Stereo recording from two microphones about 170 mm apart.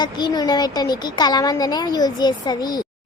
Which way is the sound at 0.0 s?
25° left (ahead or behind).